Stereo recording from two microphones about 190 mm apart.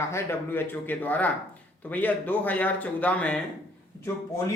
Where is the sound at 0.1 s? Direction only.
15° left (ahead or behind).